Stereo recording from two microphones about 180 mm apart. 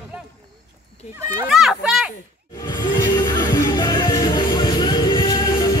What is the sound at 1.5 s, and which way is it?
Speech, centre (ahead or behind).